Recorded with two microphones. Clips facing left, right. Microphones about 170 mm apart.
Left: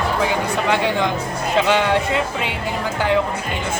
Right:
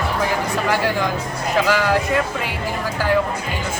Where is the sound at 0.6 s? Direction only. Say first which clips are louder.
Left 1 dB; 20° left (ahead or behind).